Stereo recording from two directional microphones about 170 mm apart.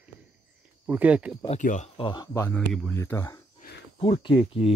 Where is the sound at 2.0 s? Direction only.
25° left (ahead or behind).